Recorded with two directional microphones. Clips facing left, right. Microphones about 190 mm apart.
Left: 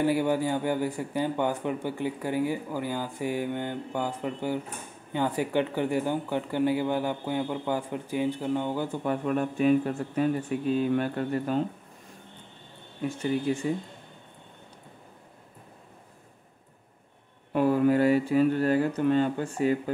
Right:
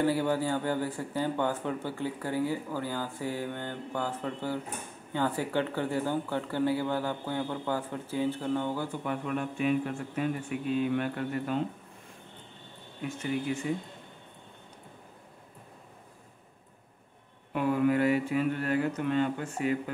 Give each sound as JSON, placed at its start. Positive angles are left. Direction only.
{"t": 0.0, "sound": "speech", "side_deg": 15}
{"t": 9.0, "sound": "speech", "side_deg": 40}
{"t": 13.2, "sound": "speech", "side_deg": 30}
{"t": 17.5, "sound": "speech", "side_deg": 35}